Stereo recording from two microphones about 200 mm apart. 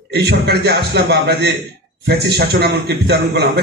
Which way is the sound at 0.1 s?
55° right (ahead or behind).